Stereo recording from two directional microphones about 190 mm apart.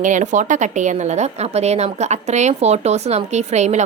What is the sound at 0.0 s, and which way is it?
A woman's voice, 40° right (ahead or behind).